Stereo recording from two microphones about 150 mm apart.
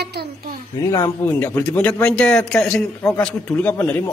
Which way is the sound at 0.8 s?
20° left (ahead or behind).